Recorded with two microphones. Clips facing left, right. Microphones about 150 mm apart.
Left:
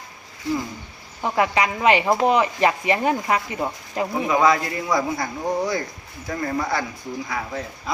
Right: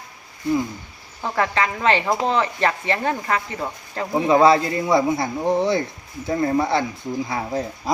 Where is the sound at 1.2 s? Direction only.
15° left (ahead or behind).